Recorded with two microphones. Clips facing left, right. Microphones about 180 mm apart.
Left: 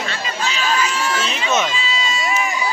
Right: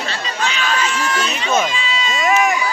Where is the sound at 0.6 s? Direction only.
35° left (ahead or behind).